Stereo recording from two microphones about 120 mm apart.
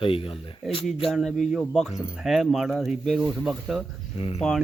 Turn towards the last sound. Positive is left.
turn(degrees=55)  # may be behind; listen again after turning